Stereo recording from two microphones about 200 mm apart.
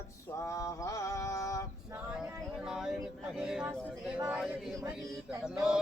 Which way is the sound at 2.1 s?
5° right (ahead or behind).